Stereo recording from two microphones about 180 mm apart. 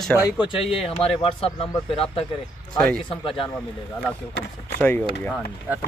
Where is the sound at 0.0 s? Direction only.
Centre (ahead or behind).